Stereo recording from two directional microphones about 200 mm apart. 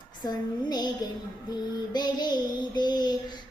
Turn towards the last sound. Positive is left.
turn(degrees=20)  # may be behind; listen again after turning